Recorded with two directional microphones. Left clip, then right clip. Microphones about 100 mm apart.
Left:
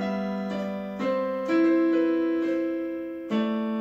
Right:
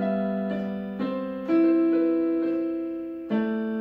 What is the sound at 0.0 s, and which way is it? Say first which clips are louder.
Keyboard: right 3 dB; 10° right (ahead or behind).